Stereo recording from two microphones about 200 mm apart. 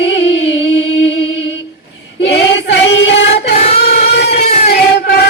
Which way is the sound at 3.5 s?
30° left (ahead or behind).